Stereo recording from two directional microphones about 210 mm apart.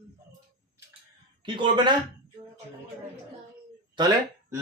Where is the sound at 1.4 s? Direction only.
20° right (ahead or behind).